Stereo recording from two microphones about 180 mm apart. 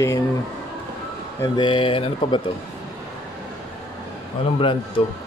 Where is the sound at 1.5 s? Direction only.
25° left (ahead or behind).